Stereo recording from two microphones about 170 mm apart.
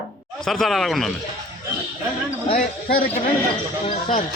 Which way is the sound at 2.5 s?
60° left (ahead or behind).